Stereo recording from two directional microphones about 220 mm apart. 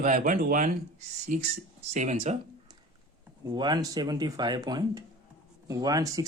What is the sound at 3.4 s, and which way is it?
Speech, 20° right (ahead or behind).